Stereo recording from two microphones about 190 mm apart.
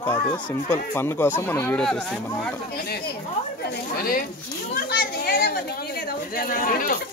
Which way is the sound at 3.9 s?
50° left (ahead or behind).